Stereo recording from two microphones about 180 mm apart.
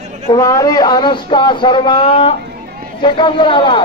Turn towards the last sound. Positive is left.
turn(degrees=25)  # may be behind; listen again after turning